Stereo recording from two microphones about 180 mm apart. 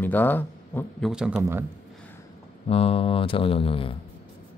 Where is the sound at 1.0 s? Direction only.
5° right (ahead or behind).